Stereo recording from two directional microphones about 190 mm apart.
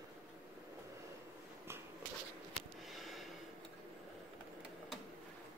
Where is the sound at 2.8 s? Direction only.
Centre (ahead or behind).